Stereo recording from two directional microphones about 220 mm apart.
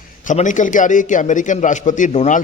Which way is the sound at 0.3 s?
35° left (ahead or behind).